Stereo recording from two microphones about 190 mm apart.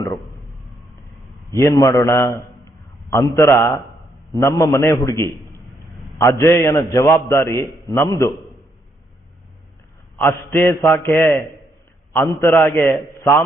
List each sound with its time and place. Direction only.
1.5 s a man's voice: 15° left (ahead or behind)
10.2 s a man's voice: 10° left (ahead or behind)